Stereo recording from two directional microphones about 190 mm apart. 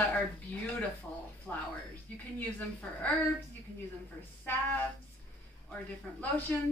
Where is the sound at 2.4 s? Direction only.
10° left (ahead or behind).